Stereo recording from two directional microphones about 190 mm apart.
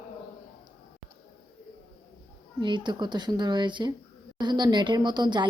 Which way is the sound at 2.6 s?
25° right (ahead or behind).